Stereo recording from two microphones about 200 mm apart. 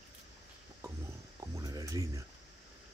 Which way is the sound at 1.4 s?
15° right (ahead or behind).